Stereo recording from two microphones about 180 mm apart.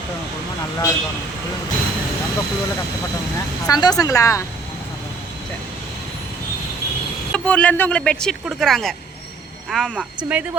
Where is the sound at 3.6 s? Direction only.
20° left (ahead or behind).